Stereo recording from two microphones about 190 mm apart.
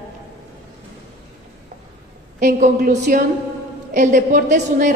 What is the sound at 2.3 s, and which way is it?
A woman's voice, 40° right (ahead or behind).